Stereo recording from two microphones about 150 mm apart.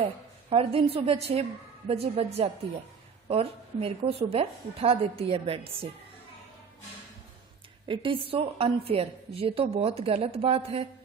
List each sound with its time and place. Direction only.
0.0 s a woman's voice: 40° right (ahead or behind)
7.9 s a woman's voice: 35° right (ahead or behind)